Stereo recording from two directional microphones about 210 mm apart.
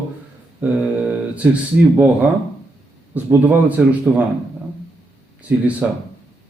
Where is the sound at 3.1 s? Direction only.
10° right (ahead or behind).